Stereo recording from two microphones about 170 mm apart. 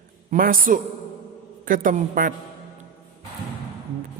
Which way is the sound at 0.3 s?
55° right (ahead or behind).